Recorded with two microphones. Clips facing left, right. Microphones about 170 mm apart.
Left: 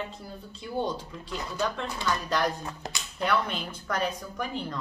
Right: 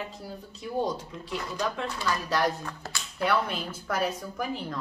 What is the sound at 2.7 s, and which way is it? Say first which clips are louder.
Speech: left 1 dB; 20° left (ahead or behind).